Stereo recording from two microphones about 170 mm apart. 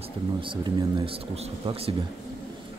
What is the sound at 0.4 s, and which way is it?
Speech, 30° right (ahead or behind).